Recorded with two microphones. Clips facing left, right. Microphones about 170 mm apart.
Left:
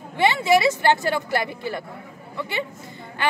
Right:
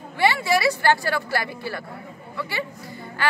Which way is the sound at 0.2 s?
20° left (ahead or behind).